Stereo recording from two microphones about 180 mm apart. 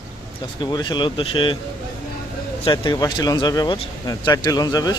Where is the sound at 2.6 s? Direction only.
25° left (ahead or behind).